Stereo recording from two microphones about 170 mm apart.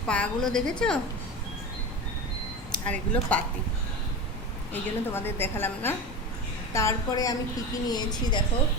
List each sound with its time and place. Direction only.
0.1 s a woman's voice: 5° left (ahead or behind)
2.7 s a woman's voice: 5° left (ahead or behind)
4.7 s a woman's voice: 15° left (ahead or behind)